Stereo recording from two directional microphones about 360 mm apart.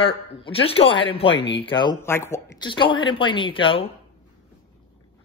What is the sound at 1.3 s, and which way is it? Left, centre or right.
Speech, left.